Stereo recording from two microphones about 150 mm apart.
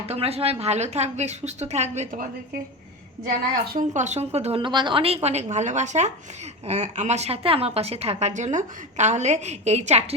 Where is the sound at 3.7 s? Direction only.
55° right (ahead or behind).